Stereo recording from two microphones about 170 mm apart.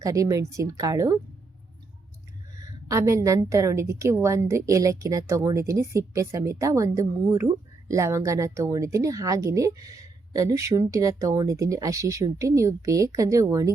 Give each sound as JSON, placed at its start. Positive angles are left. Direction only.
{"t": 0.0, "sound": "a woman's voice", "side_deg": -20}
{"t": 2.8, "sound": "a woman's voice", "side_deg": -20}